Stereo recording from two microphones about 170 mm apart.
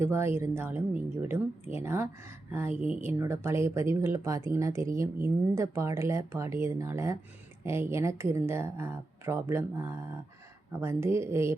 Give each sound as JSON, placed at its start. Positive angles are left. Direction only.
{"t": 0.0, "sound": "speech", "side_deg": -15}